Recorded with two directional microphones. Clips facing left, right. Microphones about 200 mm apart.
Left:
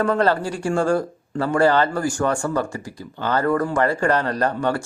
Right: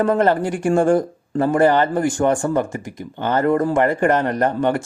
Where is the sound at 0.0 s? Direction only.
20° right (ahead or behind).